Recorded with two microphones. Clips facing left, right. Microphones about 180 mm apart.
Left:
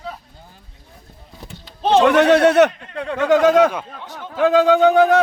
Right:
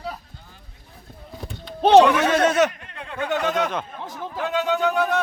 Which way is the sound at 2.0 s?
65° left (ahead or behind).